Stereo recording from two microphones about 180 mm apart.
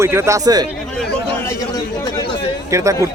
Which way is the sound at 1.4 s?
20° left (ahead or behind).